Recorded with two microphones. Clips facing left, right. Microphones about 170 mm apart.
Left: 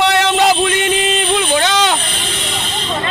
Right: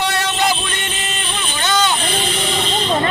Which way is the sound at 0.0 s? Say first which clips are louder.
Left 6 dB; 90° left.